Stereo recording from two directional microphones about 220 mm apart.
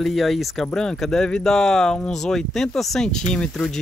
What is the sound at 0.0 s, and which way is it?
Speech, centre (ahead or behind).